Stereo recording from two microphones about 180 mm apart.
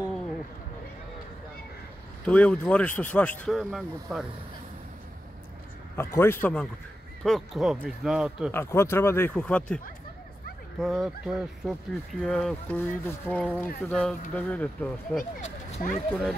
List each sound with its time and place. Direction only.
2.2 s speech: 5° left (ahead or behind)
5.9 s speech: 15° left (ahead or behind); by 8.5 s 5° right (ahead or behind)
8.5 s speech: 15° left (ahead or behind)
10.8 s speech: centre (ahead or behind)
15.4 s a sound: 45° left (ahead or behind)
16.1 s speech: centre (ahead or behind)